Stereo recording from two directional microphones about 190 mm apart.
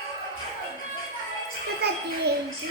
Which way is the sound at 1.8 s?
55° right (ahead or behind).